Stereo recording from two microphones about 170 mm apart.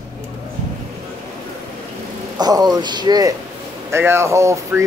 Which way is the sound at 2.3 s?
25° right (ahead or behind).